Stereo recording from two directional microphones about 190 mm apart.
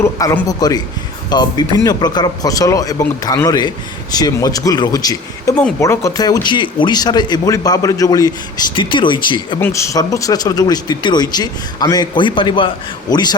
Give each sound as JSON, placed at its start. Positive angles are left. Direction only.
{"t": 0.0, "sound": "a man's voice", "side_deg": 15}
{"t": 9.6, "sound": "speech", "side_deg": 15}